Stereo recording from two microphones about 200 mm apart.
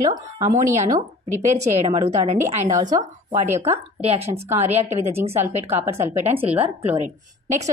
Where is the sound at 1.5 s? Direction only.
35° right (ahead or behind).